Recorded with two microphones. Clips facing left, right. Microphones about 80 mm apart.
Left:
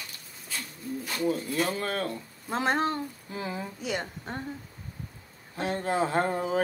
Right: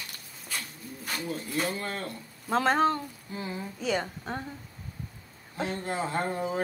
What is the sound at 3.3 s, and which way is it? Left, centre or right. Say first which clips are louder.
Speech: left 1 dB; left.